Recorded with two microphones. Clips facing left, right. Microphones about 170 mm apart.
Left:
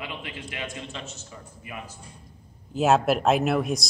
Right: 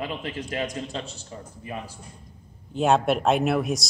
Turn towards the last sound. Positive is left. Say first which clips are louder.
# right 1 dB
turn(degrees=0)  # may be behind; listen again after turning